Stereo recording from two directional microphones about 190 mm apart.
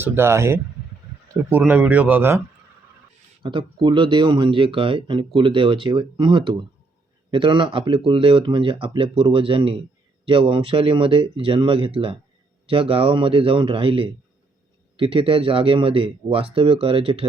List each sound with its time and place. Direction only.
0.0 s speech: 15° right (ahead or behind)
3.4 s speech: 25° right (ahead or behind)